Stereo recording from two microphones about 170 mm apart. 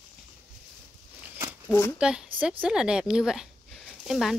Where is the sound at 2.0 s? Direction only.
5° right (ahead or behind).